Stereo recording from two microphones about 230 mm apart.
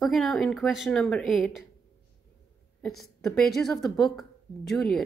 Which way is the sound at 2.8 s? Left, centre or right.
Centre.